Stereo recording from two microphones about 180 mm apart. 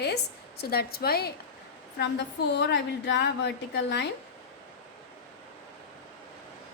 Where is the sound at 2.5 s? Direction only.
75° left (ahead or behind).